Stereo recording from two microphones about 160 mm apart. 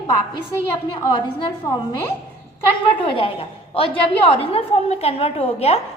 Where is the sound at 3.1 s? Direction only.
35° left (ahead or behind).